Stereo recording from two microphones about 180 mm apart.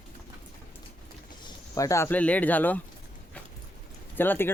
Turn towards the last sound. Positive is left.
turn(degrees=10)  # may be behind; listen again after turning